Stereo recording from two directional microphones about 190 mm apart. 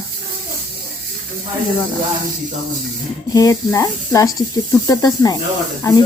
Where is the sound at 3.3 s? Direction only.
15° left (ahead or behind).